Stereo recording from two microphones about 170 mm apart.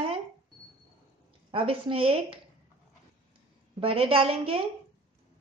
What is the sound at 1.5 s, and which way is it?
Speech, 30° right (ahead or behind).